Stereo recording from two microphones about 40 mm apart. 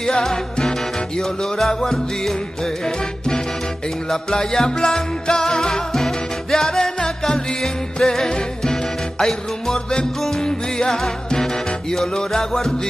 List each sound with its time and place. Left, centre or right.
0.0 s music: centre
1.2 s music: centre